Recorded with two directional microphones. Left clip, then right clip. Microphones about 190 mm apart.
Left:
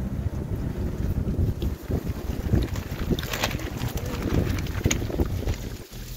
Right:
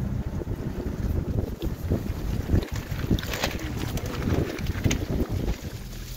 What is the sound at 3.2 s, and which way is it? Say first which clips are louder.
Boat: left 2 dB; 20° right (ahead or behind).